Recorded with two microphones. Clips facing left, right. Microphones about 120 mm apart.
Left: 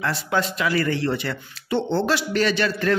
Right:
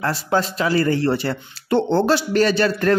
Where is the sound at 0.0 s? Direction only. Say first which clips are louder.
Right 3 dB; 35° right (ahead or behind).